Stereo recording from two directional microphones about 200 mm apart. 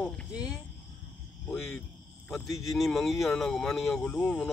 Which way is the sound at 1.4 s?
5° left (ahead or behind).